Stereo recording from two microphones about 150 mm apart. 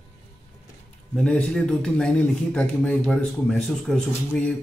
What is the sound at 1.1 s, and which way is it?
Speech, 5° left (ahead or behind).